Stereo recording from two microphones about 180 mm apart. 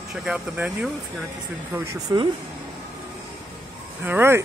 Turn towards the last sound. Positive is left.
turn(degrees=-10)  # may be behind; listen again after turning